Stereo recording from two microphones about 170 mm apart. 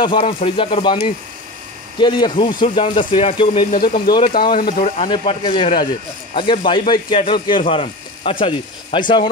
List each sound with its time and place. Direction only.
0.0 s speech: 30° left (ahead or behind)
3.7 s speech: 60° left (ahead or behind)
4.7 s speech: 40° left (ahead or behind)